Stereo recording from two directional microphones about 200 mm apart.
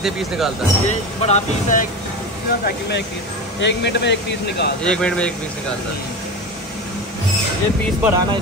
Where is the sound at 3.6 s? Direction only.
60° left (ahead or behind).